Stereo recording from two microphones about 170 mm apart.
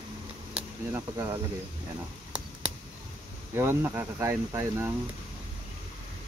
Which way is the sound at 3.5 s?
15° right (ahead or behind).